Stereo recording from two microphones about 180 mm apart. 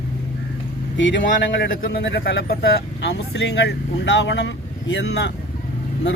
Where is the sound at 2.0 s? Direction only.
70° left (ahead or behind).